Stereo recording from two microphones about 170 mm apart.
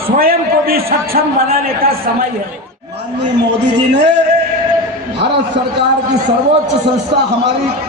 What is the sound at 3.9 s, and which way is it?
Speech, 90° right.